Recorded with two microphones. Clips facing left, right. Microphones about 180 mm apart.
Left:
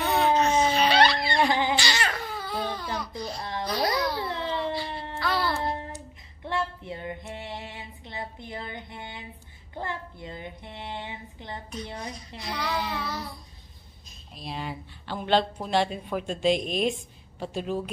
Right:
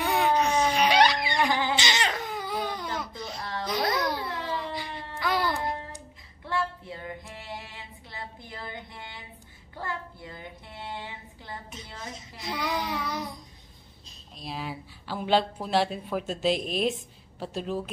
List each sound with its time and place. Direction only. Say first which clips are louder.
0.0 s a sound: left 2 dB; 10° right (ahead or behind)
1.4 s a sound: left 2 dB; 20° left (ahead or behind)
1.8 s baby cry: even; 20° right (ahead or behind)
3.3 s a sound: right 1 dB; 20° left (ahead or behind)
3.6 s cat: left 1 dB; 20° right (ahead or behind)
4.2 s babbling: left 3 dB; 20° left (ahead or behind)
5.2 s music: even; 15° right (ahead or behind)
5.6 s child singing: left 2 dB; 30° left (ahead or behind)
6.4 s female singing: left 1 dB; 20° left (ahead or behind)
9.8 s speech: left 1 dB; 20° left (ahead or behind)
12.4 s child singing: even; 20° right (ahead or behind)
14.4 s a woman's voice: left 1 dB; centre (ahead or behind)